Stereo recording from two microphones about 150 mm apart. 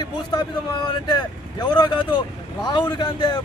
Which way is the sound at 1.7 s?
30° left (ahead or behind).